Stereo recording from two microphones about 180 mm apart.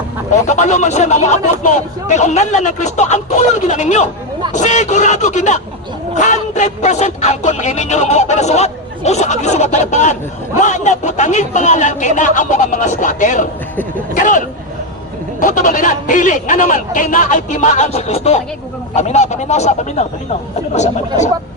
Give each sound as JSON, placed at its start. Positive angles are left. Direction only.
{"t": 0.4, "sound": "a man's voice", "side_deg": 40}